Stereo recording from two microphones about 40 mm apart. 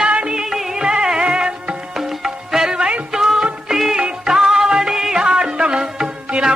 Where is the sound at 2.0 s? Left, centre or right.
Centre.